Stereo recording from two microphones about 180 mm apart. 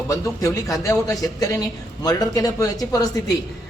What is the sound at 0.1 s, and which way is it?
A man's voice, 20° left (ahead or behind).